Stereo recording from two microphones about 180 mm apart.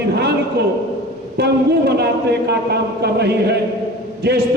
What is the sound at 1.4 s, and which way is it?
A man's voice, 65° right (ahead or behind).